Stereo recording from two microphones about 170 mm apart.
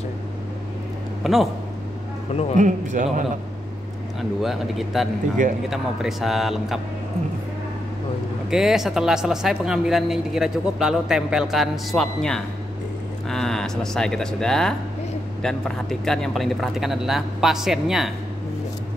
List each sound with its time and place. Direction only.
1.2 s speech: centre (ahead or behind)
2.5 s a man's voice: 45° right (ahead or behind)
4.2 s speech: centre (ahead or behind)
8.5 s speech: centre (ahead or behind)